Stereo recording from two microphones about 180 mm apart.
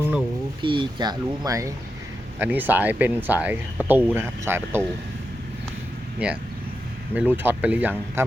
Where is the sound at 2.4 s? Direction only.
10° right (ahead or behind).